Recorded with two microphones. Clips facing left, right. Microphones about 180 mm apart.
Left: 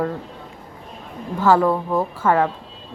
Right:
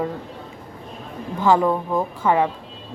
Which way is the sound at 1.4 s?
15° right (ahead or behind).